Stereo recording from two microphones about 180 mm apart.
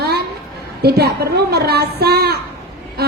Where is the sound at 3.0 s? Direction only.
60° right (ahead or behind).